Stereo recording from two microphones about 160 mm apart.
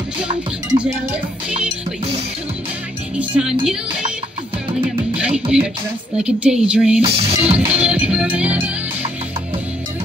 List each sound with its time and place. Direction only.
0.3 s music: 30° right (ahead or behind)
3.2 s speech: 5° right (ahead or behind)
5.1 s music: 5° right (ahead or behind)
6.1 s speech: 5° right (ahead or behind)
7.0 s music: 35° right (ahead or behind)
7.6 s music: 10° right (ahead or behind)